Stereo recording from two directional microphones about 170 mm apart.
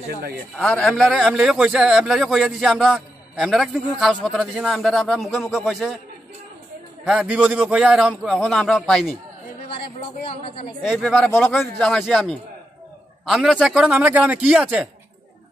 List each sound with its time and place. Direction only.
0.6 s a man's voice: centre (ahead or behind)
7.1 s a man's voice: 5° right (ahead or behind)
10.2 s a woman's voice: 30° left (ahead or behind)
10.9 s a man's voice: 5° left (ahead or behind)